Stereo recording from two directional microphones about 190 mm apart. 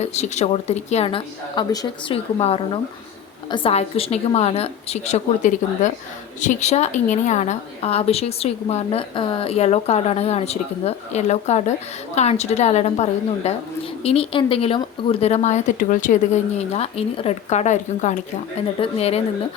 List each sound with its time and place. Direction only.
0.0 s a woman's voice: 35° left (ahead or behind)